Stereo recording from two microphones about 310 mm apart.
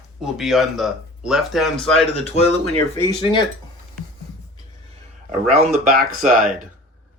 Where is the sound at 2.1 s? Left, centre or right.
Left.